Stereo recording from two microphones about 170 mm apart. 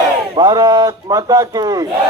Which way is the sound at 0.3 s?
25° right (ahead or behind).